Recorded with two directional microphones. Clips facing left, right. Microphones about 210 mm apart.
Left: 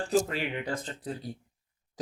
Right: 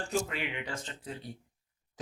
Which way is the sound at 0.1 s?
40° left (ahead or behind).